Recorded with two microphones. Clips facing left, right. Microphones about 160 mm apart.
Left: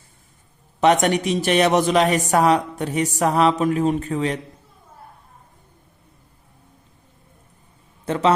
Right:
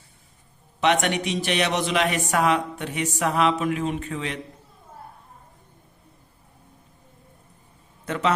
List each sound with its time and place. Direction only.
0.8 s speech: 40° left (ahead or behind)
8.0 s a man's voice: 30° left (ahead or behind)